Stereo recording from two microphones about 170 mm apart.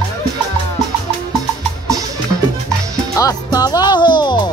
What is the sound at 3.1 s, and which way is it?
Music, 20° left (ahead or behind).